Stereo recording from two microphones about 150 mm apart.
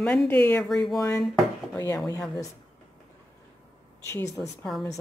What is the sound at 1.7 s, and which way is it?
Speech, 20° left (ahead or behind).